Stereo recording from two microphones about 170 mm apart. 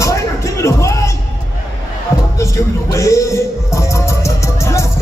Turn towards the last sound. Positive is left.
turn(degrees=15)  # may be behind; listen again after turning